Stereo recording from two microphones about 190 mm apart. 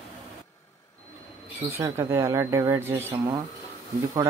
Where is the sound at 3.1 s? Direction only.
25° right (ahead or behind).